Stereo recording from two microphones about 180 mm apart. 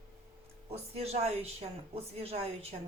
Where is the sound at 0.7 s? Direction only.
35° right (ahead or behind).